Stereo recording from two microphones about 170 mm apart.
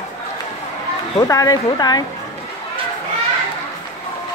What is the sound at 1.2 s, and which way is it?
Speech, 20° left (ahead or behind).